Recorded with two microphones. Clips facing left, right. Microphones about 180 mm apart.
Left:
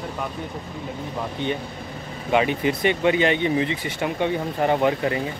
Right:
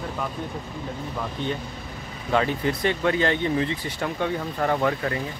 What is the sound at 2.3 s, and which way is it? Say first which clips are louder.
Speech: left 3 dB; 15° left (ahead or behind).